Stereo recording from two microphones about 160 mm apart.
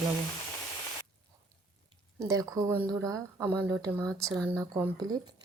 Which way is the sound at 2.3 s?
25° right (ahead or behind).